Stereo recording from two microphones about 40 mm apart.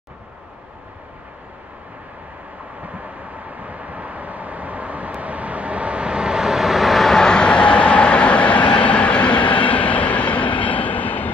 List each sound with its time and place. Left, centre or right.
2.8 s vehicle: right; by 11.2 s left